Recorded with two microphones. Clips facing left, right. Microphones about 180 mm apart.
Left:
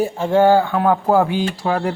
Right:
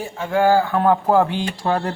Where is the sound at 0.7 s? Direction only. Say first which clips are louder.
Even; 10° left (ahead or behind).